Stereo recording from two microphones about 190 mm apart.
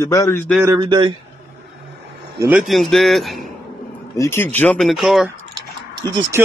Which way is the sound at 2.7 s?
Centre (ahead or behind).